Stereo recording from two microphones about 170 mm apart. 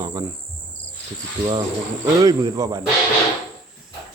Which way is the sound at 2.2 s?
20° right (ahead or behind).